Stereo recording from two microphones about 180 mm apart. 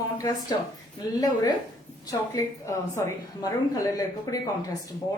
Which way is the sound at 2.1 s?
20° left (ahead or behind).